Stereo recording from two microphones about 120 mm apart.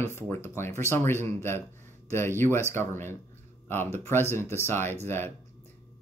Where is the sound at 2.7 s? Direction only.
20° left (ahead or behind).